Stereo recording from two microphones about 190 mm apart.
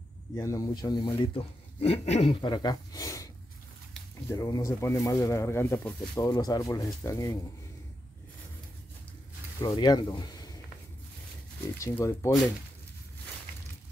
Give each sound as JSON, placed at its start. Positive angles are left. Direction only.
{"t": 0.4, "sound": "speech", "side_deg": 15}
{"t": 4.3, "sound": "speech", "side_deg": 20}
{"t": 9.6, "sound": "speech", "side_deg": 20}
{"t": 11.8, "sound": "speech", "side_deg": 15}